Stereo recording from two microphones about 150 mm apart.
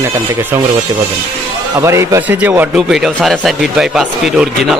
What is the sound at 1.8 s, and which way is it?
A man's voice, 20° right (ahead or behind).